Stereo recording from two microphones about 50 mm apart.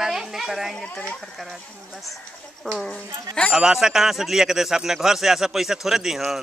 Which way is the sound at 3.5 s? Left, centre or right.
Centre.